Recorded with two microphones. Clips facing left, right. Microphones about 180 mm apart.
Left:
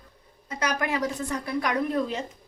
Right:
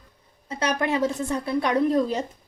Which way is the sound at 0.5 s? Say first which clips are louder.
Right 3 dB; 30° right (ahead or behind).